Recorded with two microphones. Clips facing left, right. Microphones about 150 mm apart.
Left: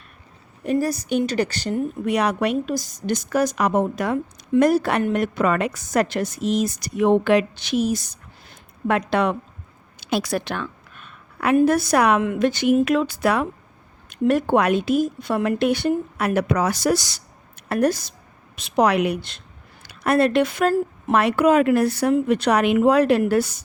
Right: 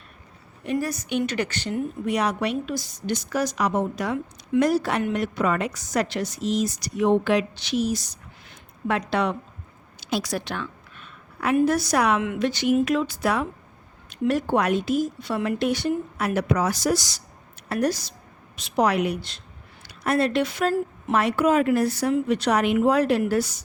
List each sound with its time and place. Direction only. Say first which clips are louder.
0.6 s a woman's voice: left 5 dB; 40° left (ahead or behind)
2.0 s a woman's voice: left 3 dB; 60° left (ahead or behind)
10.0 s a sound: left 4 dB; 60° left (ahead or behind)
11.6 s speech: left 3 dB; 55° left (ahead or behind)
12.2 s speech: left 4 dB; 45° left (ahead or behind)
18.5 s speech: left 3 dB; 65° left (ahead or behind)